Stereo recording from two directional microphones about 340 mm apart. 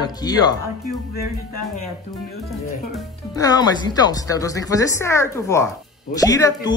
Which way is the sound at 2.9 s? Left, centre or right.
Centre.